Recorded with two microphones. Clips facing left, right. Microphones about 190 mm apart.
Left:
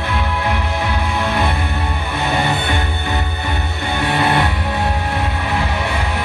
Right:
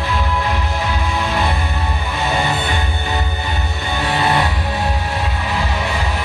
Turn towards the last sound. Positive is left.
turn(degrees=55)  # may be behind; listen again after turning